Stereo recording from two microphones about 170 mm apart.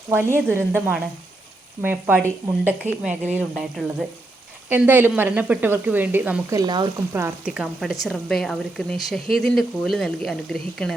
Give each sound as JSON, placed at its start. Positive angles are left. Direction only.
{"t": 0.1, "sound": "a woman's voice", "side_deg": -15}
{"t": 6.6, "sound": "speech", "side_deg": -25}
{"t": 7.1, "sound": "a woman's voice", "side_deg": -15}